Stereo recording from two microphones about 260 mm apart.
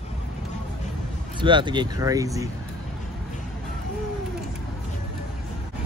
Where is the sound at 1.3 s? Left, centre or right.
Centre.